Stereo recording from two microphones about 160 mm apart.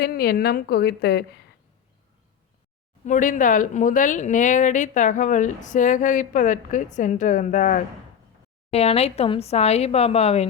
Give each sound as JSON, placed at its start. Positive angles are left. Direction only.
{"t": 0.0, "sound": "a woman's voice", "side_deg": 80}
{"t": 3.0, "sound": "speech", "side_deg": 50}
{"t": 8.7, "sound": "speech", "side_deg": 40}